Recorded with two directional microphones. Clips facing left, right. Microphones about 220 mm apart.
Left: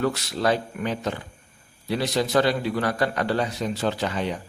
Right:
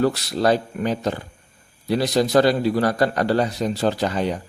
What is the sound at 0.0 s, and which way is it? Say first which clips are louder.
A man's voice: right 4 dB; 35° right (ahead or behind).